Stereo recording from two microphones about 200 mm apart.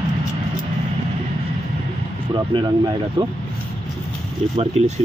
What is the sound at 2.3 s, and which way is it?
Speech, 20° right (ahead or behind).